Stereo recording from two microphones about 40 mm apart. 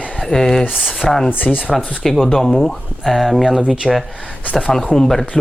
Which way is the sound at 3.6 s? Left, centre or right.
Right.